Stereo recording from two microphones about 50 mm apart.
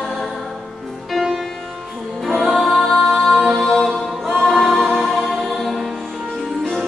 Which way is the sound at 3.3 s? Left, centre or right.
Centre.